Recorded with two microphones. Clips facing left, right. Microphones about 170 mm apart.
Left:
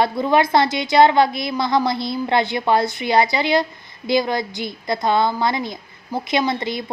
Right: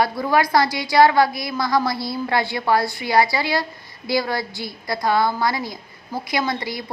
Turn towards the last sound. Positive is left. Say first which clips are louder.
# left 3 dB
turn(degrees=25)  # may be behind; listen again after turning